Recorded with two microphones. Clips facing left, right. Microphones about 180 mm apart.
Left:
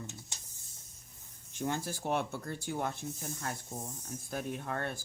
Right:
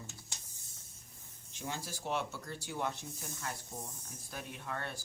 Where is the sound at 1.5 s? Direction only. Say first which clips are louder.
Left 7 dB; 50° left (ahead or behind).